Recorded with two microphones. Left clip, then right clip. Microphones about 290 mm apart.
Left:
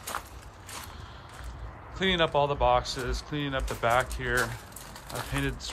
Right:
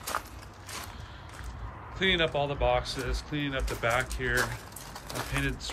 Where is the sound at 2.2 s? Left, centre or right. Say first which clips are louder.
Left 3 dB; centre.